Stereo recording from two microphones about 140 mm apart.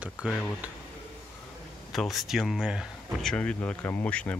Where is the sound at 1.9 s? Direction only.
Centre (ahead or behind).